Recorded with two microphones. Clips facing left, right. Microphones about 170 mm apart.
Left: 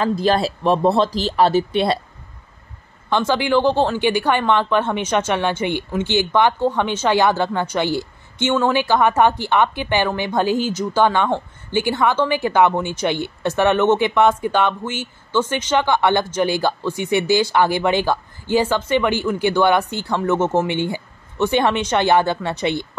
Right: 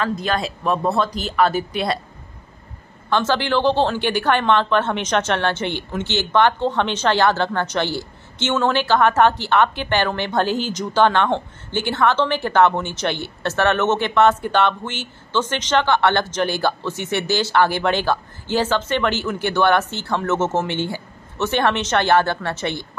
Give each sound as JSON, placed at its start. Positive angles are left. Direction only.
{"t": 0.0, "sound": "speech", "side_deg": 30}
{"t": 3.1, "sound": "speech", "side_deg": 10}